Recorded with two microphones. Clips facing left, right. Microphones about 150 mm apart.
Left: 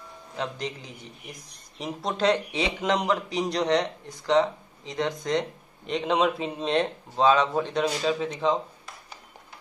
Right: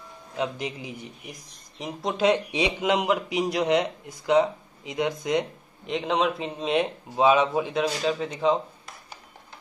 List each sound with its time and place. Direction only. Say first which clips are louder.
0.4 s speech: right 3 dB; 10° right (ahead or behind)
1.8 s speech: right 1 dB; centre (ahead or behind)
2.2 s speech: right 2 dB; 15° right (ahead or behind)